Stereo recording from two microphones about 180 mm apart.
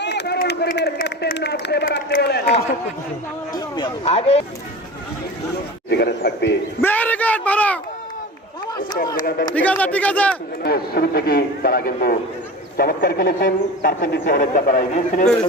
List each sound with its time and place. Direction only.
0.0 s a sound: 65° left (ahead or behind)
3.8 s speech: 30° left (ahead or behind)
5.9 s a man's voice: 70° left (ahead or behind)
6.8 s a child's voice: 10° left (ahead or behind)
9.1 s speech: 50° left (ahead or behind)
9.6 s a child's voice: 10° left (ahead or behind)
10.6 s a man's voice: 60° left (ahead or behind); by 15.3 s 40° left (ahead or behind)